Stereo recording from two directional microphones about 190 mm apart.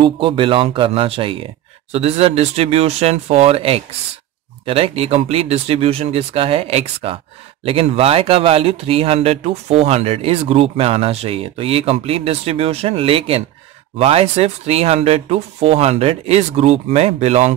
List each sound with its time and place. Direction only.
0.0 s speech: 25° right (ahead or behind)